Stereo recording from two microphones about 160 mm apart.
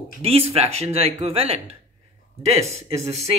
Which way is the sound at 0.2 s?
40° right (ahead or behind).